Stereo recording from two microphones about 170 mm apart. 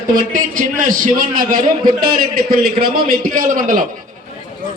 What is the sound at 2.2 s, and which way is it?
A man's voice, 60° right (ahead or behind).